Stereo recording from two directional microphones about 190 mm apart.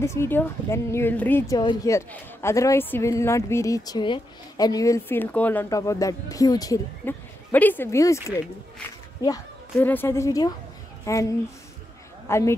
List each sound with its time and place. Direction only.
0.0 s a woman's voice: 15° left (ahead or behind)
9.8 s a woman's voice: 10° left (ahead or behind)